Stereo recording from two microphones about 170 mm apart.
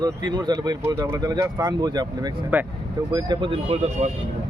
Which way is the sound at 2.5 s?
10° right (ahead or behind).